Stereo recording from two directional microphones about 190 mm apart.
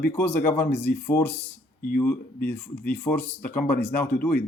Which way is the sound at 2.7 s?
50° left (ahead or behind).